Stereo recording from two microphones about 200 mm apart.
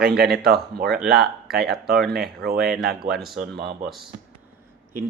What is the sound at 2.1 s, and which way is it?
Speech, 50° right (ahead or behind).